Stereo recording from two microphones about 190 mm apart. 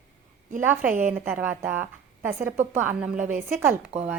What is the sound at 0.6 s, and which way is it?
A woman's voice, 10° right (ahead or behind).